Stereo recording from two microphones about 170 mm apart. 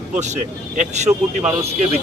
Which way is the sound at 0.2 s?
45° right (ahead or behind).